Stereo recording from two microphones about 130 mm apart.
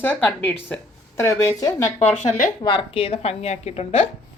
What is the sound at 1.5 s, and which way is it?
Speech, 30° left (ahead or behind).